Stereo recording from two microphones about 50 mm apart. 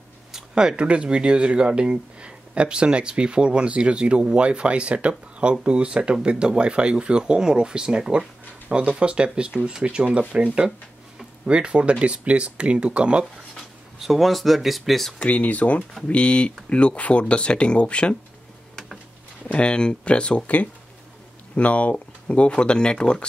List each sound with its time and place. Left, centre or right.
0.3 s a sound: centre
0.8 s speech: right
13.9 s speech: centre
15.1 s speech: left
19.4 s speech: centre